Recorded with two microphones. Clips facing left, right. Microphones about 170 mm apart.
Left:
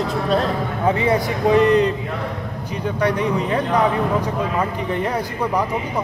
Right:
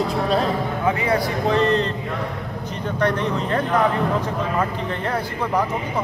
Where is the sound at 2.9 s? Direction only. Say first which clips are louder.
Left 1 dB; 10° left (ahead or behind).